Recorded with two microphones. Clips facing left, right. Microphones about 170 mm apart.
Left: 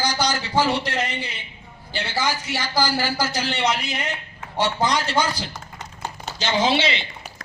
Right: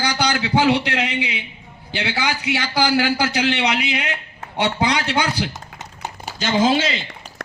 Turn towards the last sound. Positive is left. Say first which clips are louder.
# right 3 dB
turn(degrees=-45)  # may be behind; listen again after turning